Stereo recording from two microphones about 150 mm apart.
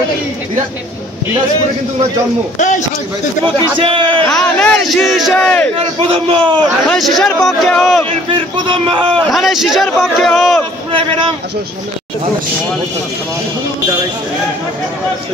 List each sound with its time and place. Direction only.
3.7 s a man's voice: 35° right (ahead or behind)
4.3 s speech: 5° left (ahead or behind)
5.9 s a man's voice: 35° right (ahead or behind)
6.9 s speech: centre (ahead or behind)
8.3 s a man's voice: 35° right (ahead or behind)
9.1 s speech: 5° left (ahead or behind)
10.9 s a man's voice: 35° right (ahead or behind)